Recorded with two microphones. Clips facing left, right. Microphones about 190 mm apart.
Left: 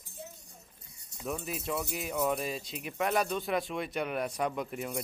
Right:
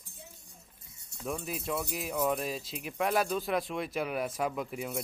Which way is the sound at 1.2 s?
Centre (ahead or behind).